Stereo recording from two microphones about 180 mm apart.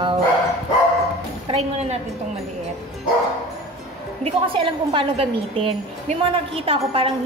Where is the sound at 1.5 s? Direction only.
35° right (ahead or behind).